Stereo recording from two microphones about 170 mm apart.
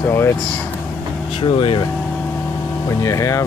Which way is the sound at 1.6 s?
30° left (ahead or behind).